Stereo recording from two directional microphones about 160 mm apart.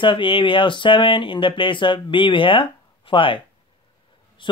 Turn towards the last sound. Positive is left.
turn(degrees=30)  # may be behind; listen again after turning